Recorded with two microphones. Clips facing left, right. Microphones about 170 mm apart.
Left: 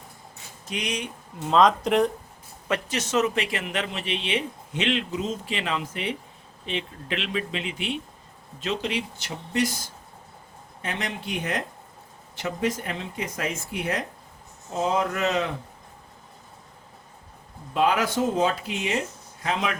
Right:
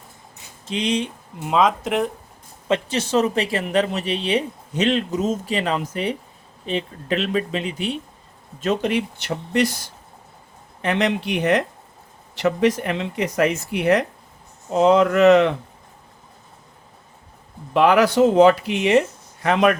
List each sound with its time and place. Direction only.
0.6 s speech: 25° right (ahead or behind)
1.4 s speech: 10° right (ahead or behind)
2.6 s speech: 30° right (ahead or behind)
8.6 s speech: 50° right (ahead or behind); by 15.5 s 70° right (ahead or behind)
17.7 s speech: 70° right (ahead or behind)